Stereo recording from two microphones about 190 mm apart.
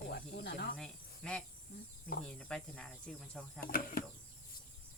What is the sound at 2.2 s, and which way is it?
Speech, 5° left (ahead or behind).